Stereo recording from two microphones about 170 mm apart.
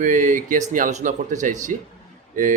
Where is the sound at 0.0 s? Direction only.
50° right (ahead or behind).